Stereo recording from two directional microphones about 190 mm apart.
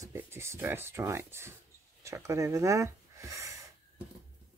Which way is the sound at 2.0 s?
15° right (ahead or behind).